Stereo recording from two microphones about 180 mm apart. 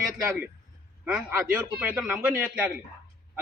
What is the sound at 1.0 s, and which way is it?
A man's voice, 5° right (ahead or behind).